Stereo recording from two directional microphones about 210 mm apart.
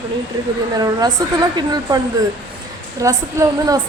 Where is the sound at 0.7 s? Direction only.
20° right (ahead or behind).